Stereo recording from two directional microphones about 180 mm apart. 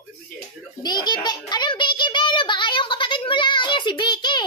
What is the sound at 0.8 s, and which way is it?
A child's voice, 25° left (ahead or behind).